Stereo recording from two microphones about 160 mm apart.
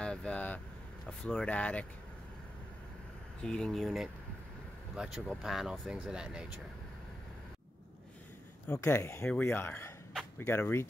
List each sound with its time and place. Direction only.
0.0 s vehicle: 5° left (ahead or behind)
1.0 s speech: 5° left (ahead or behind)
3.4 s speech: 5° left (ahead or behind)
8.6 s speech: 15° left (ahead or behind)